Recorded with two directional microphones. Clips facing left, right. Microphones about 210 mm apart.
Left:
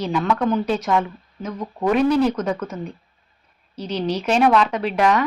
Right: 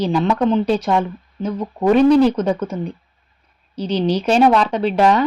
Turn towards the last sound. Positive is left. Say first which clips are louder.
# right 4 dB
turn(degrees=-30)  # may be behind; listen again after turning